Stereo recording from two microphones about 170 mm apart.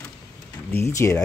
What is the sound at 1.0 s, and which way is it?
Speech, 10° left (ahead or behind).